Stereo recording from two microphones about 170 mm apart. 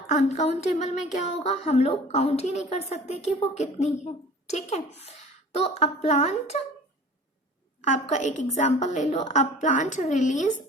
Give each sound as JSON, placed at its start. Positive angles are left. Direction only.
{"t": 0.1, "sound": "speech", "side_deg": 40}
{"t": 7.9, "sound": "a woman's voice", "side_deg": 45}